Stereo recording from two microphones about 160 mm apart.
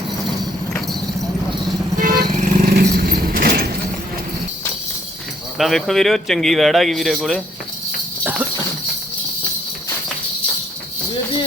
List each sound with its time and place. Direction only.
2.0 s vehicle: 65° right (ahead or behind)
2.3 s vehicle: 50° right (ahead or behind); by 3.7 s 65° right (ahead or behind)
5.5 s speech: centre (ahead or behind)